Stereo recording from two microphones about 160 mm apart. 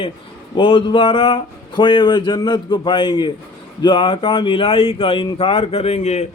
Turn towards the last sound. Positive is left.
turn(degrees=45)  # may be behind; listen again after turning